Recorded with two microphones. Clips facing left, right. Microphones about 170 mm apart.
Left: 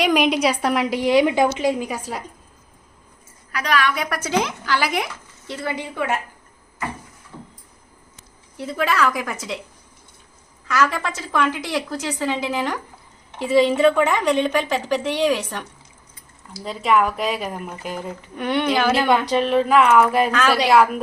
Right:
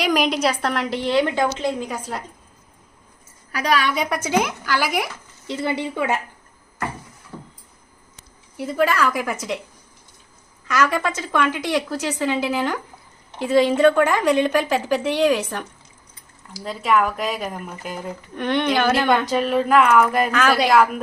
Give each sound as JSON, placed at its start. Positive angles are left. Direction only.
{"t": 0.0, "sound": "a woman's voice", "side_deg": 0}
{"t": 3.7, "sound": "a woman's voice", "side_deg": -30}
{"t": 5.5, "sound": "speech", "side_deg": -20}
{"t": 8.5, "sound": "a woman's voice", "side_deg": 0}
{"t": 10.7, "sound": "a woman's voice", "side_deg": 0}
{"t": 16.6, "sound": "a woman's voice", "side_deg": 0}